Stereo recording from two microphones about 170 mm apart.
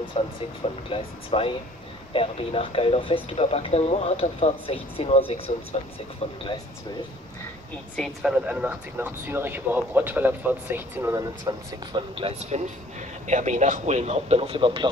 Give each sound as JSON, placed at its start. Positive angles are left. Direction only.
{"t": 0.0, "sound": "speech", "side_deg": 30}
{"t": 7.9, "sound": "speech", "side_deg": 0}
{"t": 11.1, "sound": "speech", "side_deg": -25}